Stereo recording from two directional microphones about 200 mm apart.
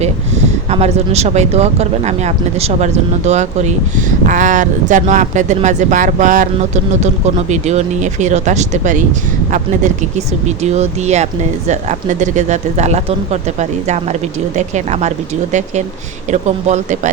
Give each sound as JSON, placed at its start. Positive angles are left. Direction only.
{"t": 0.7, "sound": "speech", "side_deg": -30}
{"t": 7.5, "sound": "speech", "side_deg": -35}
{"t": 16.3, "sound": "speech", "side_deg": -35}